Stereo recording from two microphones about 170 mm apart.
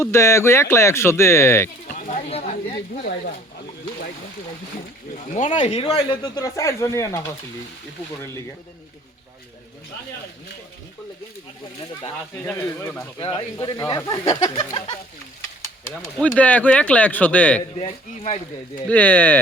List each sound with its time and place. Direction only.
0.0 s speech: 15° left (ahead or behind)
1.9 s speech: 45° left (ahead or behind)
5.5 s speech: 35° left (ahead or behind); by 7.3 s 20° left (ahead or behind)
12.5 s speech: 10° left (ahead or behind)
13.1 s speech: 30° left (ahead or behind)
16.0 s speech: centre (ahead or behind)
17.7 s speech: 35° left (ahead or behind)
18.9 s speech: 10° left (ahead or behind)